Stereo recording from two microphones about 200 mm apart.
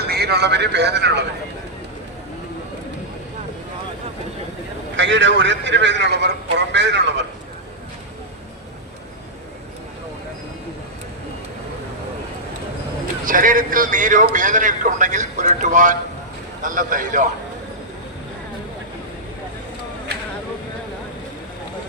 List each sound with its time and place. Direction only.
0.1 s a man's voice: 55° right (ahead or behind)
4.9 s a man's voice: 65° right (ahead or behind)
13.2 s a man's voice: 45° right (ahead or behind)